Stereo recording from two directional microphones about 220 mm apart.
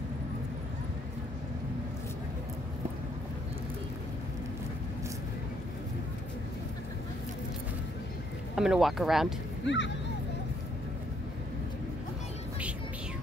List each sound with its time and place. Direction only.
8.5 s speech: centre (ahead or behind)
9.6 s speech: 55° left (ahead or behind)